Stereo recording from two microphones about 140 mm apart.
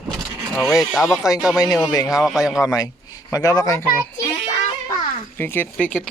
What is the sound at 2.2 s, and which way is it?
Speech, centre (ahead or behind).